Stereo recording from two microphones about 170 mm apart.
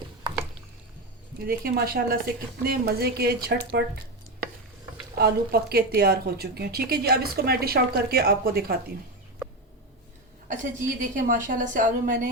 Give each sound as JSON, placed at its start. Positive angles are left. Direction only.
{"t": 1.5, "sound": "a woman's voice", "side_deg": -60}
{"t": 5.1, "sound": "a woman's voice", "side_deg": -65}
{"t": 10.5, "sound": "a woman's voice", "side_deg": -50}